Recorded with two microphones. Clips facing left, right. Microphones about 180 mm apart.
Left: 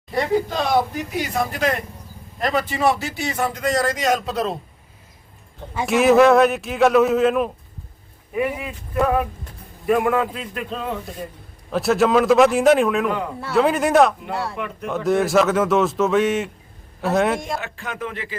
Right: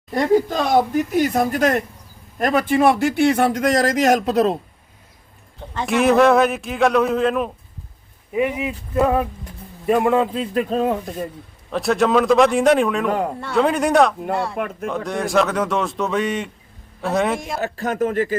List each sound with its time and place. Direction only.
0.1 s speech: 45° right (ahead or behind)
5.7 s a man's voice: centre (ahead or behind)
8.4 s speech: 20° right (ahead or behind)
10.7 s speech: 45° right (ahead or behind)
11.7 s a man's voice: centre (ahead or behind)
13.1 s speech: 45° right (ahead or behind)
13.4 s a man's voice: centre (ahead or behind)
14.5 s speech: 45° right (ahead or behind)
14.8 s a man's voice: centre (ahead or behind)
17.6 s speech: 40° right (ahead or behind)